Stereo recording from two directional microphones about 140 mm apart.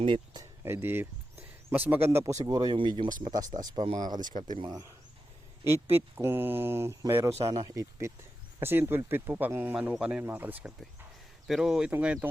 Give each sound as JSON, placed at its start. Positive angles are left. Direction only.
{"t": 0.0, "sound": "speech", "side_deg": -35}
{"t": 0.6, "sound": "speech", "side_deg": -15}
{"t": 5.6, "sound": "speech", "side_deg": -15}